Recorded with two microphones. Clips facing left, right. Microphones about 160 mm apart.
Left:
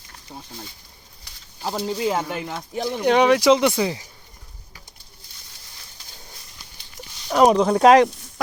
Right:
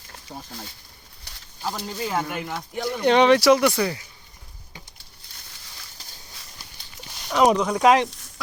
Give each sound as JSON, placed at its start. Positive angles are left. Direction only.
{"t": 1.7, "sound": "speech", "side_deg": 20}
{"t": 3.0, "sound": "speech", "side_deg": 10}
{"t": 3.5, "sound": "speech", "side_deg": 20}
{"t": 7.3, "sound": "speech", "side_deg": 35}